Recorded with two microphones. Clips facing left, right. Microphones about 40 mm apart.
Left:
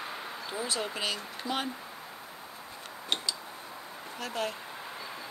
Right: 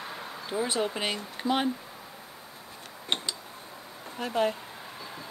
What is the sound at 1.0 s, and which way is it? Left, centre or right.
Speech, right.